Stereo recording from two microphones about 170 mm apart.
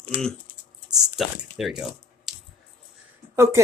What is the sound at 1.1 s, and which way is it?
Speech, centre (ahead or behind).